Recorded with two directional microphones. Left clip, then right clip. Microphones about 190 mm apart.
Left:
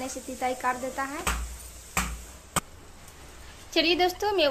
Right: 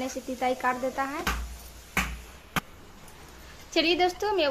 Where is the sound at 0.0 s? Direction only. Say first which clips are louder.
Right 2 dB; 10° right (ahead or behind).